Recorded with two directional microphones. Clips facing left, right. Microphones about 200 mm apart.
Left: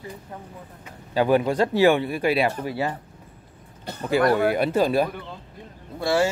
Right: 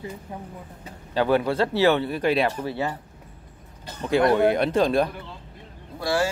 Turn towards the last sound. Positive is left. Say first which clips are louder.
# left 3 dB
turn(degrees=25)  # may be behind; listen again after turning